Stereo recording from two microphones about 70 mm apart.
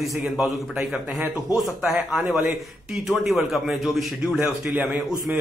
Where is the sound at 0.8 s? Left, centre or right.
Centre.